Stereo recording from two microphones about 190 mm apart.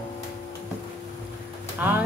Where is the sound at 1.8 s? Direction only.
10° right (ahead or behind).